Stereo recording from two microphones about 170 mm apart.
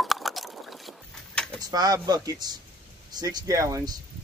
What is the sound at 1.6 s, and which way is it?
Speech, 20° right (ahead or behind).